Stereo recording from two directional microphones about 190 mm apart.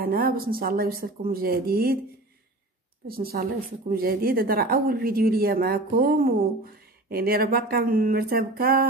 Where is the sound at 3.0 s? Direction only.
50° right (ahead or behind).